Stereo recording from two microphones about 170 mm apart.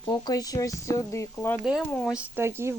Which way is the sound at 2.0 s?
5° right (ahead or behind).